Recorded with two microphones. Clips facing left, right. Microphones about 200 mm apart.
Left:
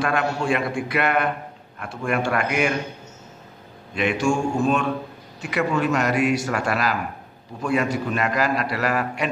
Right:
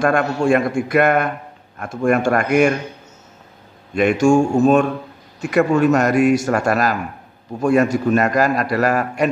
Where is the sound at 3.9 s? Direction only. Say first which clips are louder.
Right 8 dB; 45° right (ahead or behind).